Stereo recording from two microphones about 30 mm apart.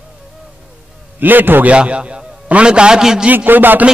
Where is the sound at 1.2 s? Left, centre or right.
Right.